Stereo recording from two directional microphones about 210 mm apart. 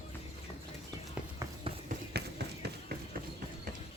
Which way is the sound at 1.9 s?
50° right (ahead or behind).